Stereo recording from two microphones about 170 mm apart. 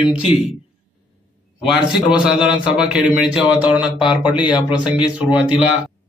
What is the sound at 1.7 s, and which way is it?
A man's voice, 5° right (ahead or behind).